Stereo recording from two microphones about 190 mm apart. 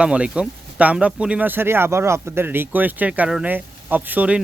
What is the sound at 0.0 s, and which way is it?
Speech, 5° right (ahead or behind).